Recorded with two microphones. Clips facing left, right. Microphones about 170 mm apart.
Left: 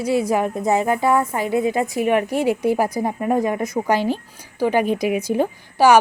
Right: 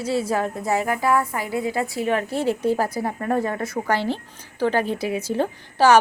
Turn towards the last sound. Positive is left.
turn(degrees=15)  # may be behind; listen again after turning